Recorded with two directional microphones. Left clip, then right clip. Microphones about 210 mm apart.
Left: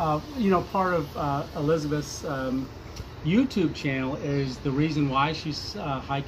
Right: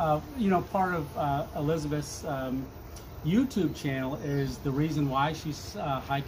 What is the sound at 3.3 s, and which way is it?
Speech, 15° right (ahead or behind).